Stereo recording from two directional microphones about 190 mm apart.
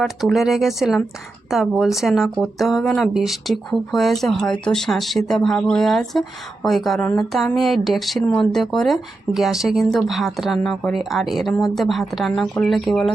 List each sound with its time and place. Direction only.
0.0 s speech: centre (ahead or behind)